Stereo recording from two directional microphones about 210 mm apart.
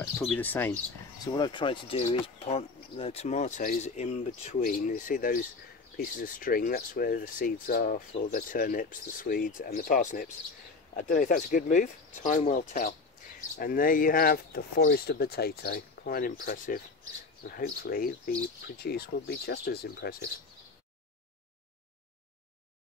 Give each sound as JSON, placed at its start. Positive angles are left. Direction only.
{"t": 0.0, "sound": "speech", "side_deg": 5}
{"t": 1.2, "sound": "speech", "side_deg": 20}